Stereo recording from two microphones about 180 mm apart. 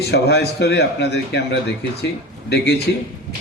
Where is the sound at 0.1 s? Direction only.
65° left (ahead or behind).